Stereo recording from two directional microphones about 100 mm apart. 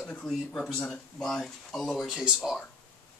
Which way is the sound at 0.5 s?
10° left (ahead or behind).